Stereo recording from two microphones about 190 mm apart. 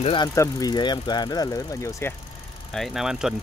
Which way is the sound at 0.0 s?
25° left (ahead or behind).